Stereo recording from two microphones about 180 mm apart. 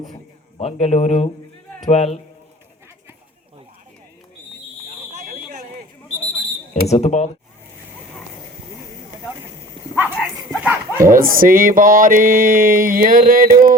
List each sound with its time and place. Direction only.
0.6 s a man's voice: 35° left (ahead or behind)
5.3 s fire alarm: 45° right (ahead or behind)
6.9 s a man's voice: 40° left (ahead or behind)
9.9 s speech: 5° right (ahead or behind)
11.1 s a sound: 50° right (ahead or behind)